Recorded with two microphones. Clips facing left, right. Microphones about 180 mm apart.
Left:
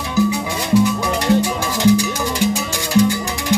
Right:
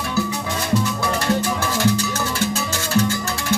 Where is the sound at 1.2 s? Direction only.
15° left (ahead or behind).